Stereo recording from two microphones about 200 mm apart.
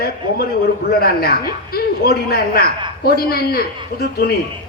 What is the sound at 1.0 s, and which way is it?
A woman's voice, 50° left (ahead or behind).